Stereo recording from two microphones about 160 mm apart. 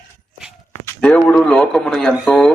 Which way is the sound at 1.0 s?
10° left (ahead or behind).